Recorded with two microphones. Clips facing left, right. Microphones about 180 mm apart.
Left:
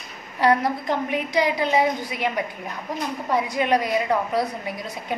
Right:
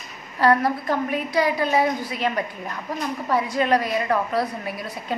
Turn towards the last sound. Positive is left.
turn(degrees=15)  # may be behind; listen again after turning